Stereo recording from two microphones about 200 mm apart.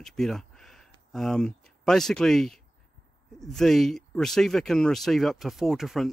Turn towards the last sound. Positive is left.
turn(degrees=0)  # may be behind; listen again after turning